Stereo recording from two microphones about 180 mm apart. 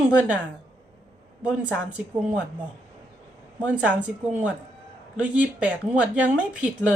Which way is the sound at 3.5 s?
10° right (ahead or behind).